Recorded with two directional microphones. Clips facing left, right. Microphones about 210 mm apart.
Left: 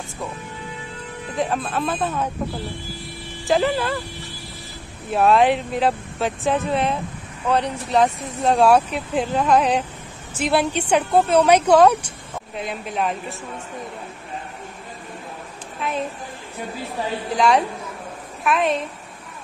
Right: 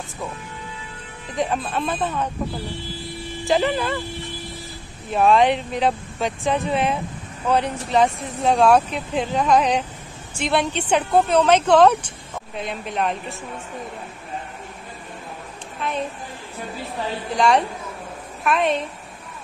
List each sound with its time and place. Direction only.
1.3 s speech: centre (ahead or behind)
3.4 s speech: centre (ahead or behind)
5.1 s speech: 5° left (ahead or behind)
17.4 s speech: centre (ahead or behind)